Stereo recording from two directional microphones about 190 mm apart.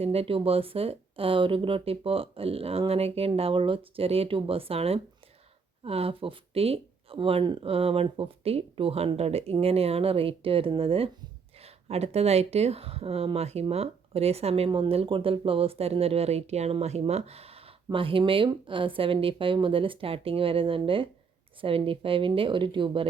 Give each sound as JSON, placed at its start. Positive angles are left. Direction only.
{"t": 0.0, "sound": "speech", "side_deg": -30}